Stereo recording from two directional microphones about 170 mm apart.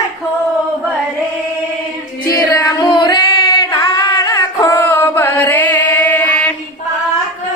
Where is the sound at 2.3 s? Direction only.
20° left (ahead or behind).